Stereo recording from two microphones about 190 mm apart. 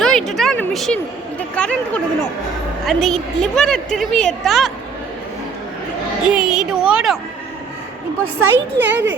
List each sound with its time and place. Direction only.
0.0 s a sound: centre (ahead or behind)
1.4 s a woman's voice: 5° left (ahead or behind)
6.3 s a woman's voice: 5° right (ahead or behind)
8.4 s speech: 85° right